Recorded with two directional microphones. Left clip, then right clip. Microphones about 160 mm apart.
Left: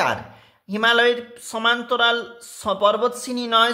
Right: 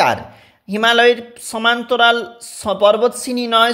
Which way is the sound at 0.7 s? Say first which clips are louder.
Right 5 dB; 25° right (ahead or behind).